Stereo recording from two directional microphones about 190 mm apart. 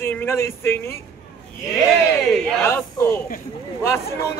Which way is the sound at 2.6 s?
15° left (ahead or behind).